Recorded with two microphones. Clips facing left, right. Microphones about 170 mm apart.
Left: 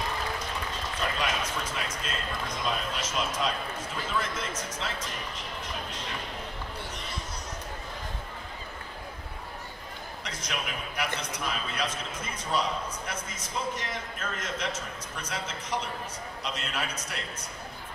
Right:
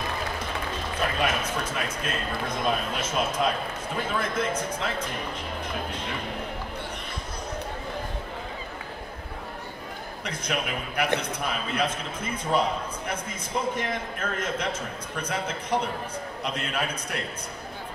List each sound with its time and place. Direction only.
1.2 s a man's voice: 55° right (ahead or behind)
10.2 s a man's voice: 55° right (ahead or behind)
13.7 s a man's voice: 55° right (ahead or behind)